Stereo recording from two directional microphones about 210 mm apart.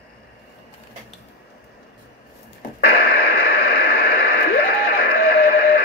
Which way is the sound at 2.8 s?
50° left (ahead or behind).